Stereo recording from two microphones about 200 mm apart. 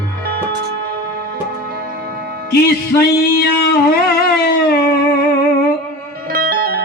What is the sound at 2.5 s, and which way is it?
Speech, 50° left (ahead or behind).